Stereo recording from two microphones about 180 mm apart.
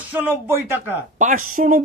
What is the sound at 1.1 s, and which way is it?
Speech, 45° right (ahead or behind).